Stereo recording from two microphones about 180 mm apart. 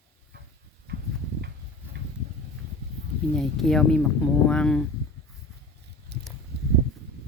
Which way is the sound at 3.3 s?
5° left (ahead or behind).